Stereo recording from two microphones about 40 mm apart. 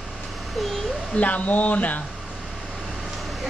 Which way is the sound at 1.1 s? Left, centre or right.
Left.